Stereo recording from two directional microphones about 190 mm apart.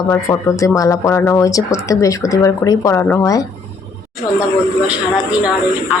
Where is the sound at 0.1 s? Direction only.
15° left (ahead or behind).